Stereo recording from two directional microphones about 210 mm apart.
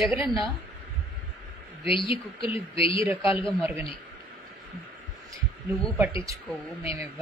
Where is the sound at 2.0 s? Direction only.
25° left (ahead or behind).